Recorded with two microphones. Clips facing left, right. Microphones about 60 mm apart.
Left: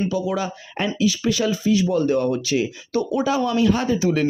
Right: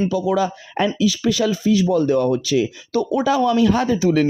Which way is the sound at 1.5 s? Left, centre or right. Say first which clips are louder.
Right 2 dB; right.